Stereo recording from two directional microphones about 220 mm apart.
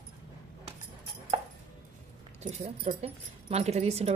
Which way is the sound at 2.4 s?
30° right (ahead or behind).